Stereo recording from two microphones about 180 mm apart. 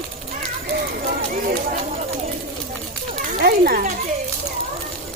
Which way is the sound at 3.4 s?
55° right (ahead or behind).